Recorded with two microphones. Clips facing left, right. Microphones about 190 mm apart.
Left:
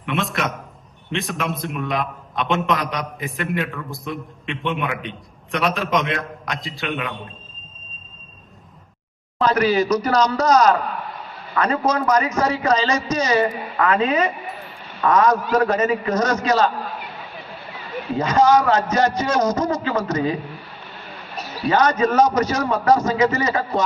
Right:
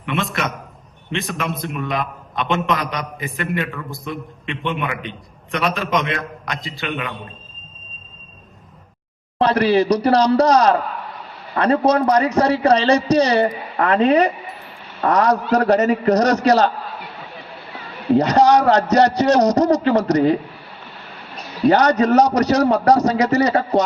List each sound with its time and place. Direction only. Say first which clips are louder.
0.0 s a man's voice: right 1 dB; centre (ahead or behind)
9.4 s a man's voice: right 2 dB; 30° right (ahead or behind)
18.2 s a man's voice: right 1 dB; 40° right (ahead or behind)
21.7 s a man's voice: right 4 dB; 40° right (ahead or behind)